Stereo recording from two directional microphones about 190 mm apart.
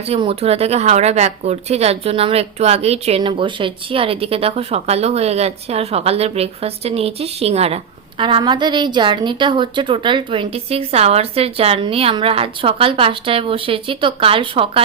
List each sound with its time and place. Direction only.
0.1 s a woman's voice: 30° right (ahead or behind)